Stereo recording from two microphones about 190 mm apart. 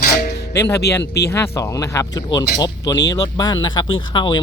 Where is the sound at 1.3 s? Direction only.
15° left (ahead or behind).